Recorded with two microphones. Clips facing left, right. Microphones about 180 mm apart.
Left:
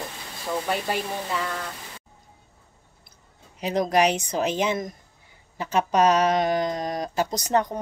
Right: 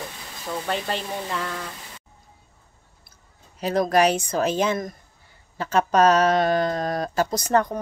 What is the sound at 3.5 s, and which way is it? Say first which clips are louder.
A woman's voice: right 2 dB; 15° left (ahead or behind).